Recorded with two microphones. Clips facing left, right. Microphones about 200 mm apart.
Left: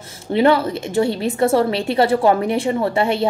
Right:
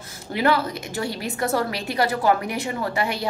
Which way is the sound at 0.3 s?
25° left (ahead or behind).